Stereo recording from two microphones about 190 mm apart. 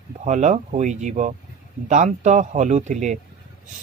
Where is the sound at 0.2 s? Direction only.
40° right (ahead or behind).